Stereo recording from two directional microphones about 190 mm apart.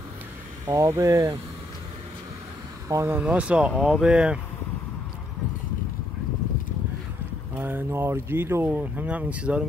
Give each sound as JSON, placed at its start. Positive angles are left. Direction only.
{"t": 0.7, "sound": "speech", "side_deg": -15}
{"t": 2.9, "sound": "speech", "side_deg": -15}
{"t": 7.5, "sound": "speech", "side_deg": -10}